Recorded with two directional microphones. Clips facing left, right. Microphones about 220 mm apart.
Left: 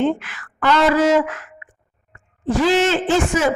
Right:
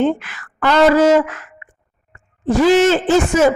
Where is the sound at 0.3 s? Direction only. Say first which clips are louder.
Right 1 dB; 40° right (ahead or behind).